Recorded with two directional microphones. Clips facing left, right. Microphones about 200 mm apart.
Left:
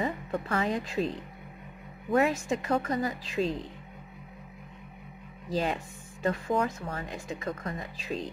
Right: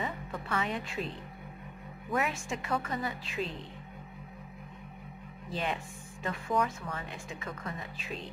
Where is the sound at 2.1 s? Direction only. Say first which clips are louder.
Left 7 dB; 40° left (ahead or behind).